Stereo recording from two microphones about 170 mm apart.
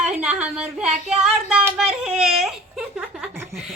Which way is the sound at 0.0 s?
5° right (ahead or behind).